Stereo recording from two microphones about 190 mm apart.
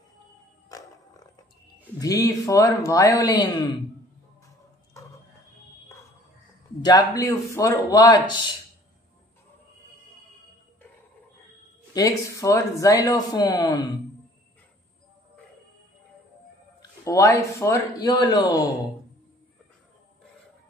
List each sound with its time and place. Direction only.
0.7 s roaring cats: 20° left (ahead or behind)
2.0 s speech: 15° left (ahead or behind)
6.8 s a man's voice: 20° left (ahead or behind)
11.9 s speech: 15° left (ahead or behind)
17.0 s speech: 15° left (ahead or behind)